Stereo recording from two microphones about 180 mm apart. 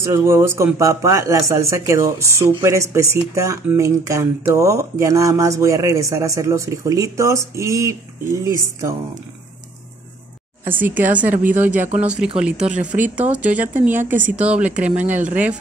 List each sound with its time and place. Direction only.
0.0 s speech: 15° right (ahead or behind)
10.6 s speech: 10° right (ahead or behind)